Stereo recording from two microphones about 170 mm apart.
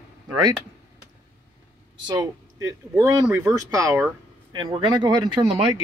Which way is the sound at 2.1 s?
25° right (ahead or behind).